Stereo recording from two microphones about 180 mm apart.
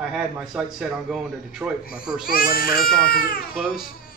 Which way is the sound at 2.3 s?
55° left (ahead or behind).